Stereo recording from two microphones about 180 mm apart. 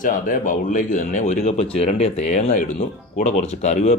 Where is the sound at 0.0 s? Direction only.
45° left (ahead or behind).